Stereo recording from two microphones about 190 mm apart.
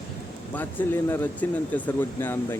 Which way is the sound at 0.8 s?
10° left (ahead or behind).